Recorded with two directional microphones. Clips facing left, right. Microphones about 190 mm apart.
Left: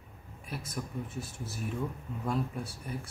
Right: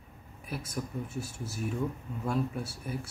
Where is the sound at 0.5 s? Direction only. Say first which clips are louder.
Right 2 dB; centre (ahead or behind).